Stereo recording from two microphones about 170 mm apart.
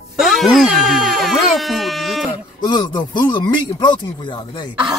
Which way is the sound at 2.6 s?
25° left (ahead or behind).